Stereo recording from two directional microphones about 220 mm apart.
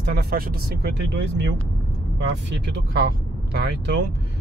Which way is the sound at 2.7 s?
50° right (ahead or behind).